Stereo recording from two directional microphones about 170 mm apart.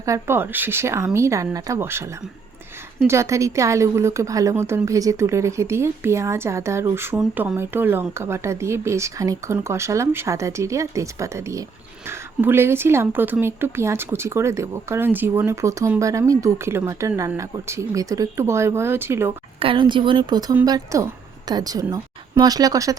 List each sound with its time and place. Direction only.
0.0 s speech: 15° right (ahead or behind)
19.5 s a woman's voice: 30° right (ahead or behind)